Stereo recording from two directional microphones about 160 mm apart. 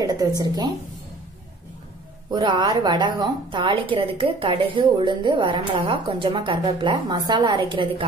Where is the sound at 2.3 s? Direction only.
30° right (ahead or behind).